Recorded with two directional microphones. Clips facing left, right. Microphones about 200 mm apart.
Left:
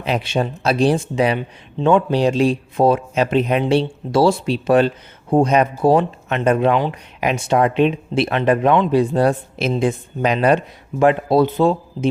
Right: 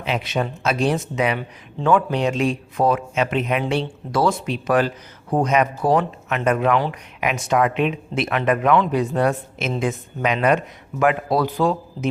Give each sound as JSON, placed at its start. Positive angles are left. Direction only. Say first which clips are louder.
{"t": 0.0, "sound": "a man's voice", "louder": "left 3 dB", "side_deg": 35}